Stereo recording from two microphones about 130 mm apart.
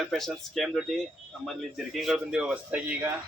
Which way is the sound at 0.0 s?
Centre (ahead or behind).